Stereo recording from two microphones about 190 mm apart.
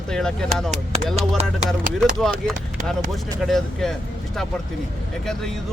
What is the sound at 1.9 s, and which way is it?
Speech, centre (ahead or behind).